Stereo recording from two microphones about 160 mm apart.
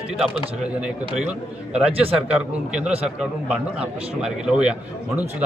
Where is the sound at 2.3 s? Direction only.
5° right (ahead or behind).